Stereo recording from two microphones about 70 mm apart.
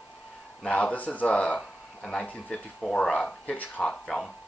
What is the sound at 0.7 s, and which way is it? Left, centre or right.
Speech, left.